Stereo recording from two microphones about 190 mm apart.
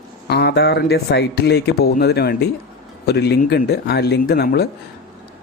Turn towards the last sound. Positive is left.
turn(degrees=55)  # may be behind; listen again after turning